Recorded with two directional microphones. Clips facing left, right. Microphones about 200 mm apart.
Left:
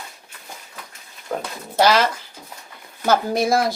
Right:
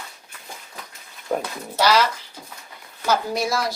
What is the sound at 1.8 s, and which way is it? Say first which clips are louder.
Speech: left 2 dB; 50° left (ahead or behind).